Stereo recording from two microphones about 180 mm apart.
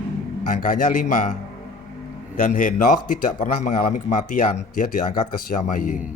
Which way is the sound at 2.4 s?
45° left (ahead or behind).